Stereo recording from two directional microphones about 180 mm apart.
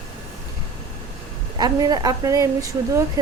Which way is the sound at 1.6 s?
20° right (ahead or behind).